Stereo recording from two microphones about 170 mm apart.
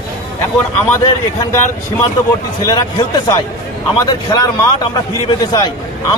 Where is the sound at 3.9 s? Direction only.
20° left (ahead or behind).